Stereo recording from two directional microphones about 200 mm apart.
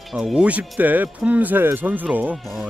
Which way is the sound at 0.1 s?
Centre (ahead or behind).